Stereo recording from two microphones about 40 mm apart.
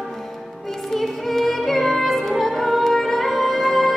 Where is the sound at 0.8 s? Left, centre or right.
Centre.